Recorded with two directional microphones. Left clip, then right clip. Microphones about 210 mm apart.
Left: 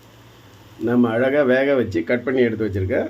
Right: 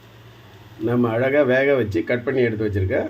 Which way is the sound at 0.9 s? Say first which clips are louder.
Left 1 dB; 10° left (ahead or behind).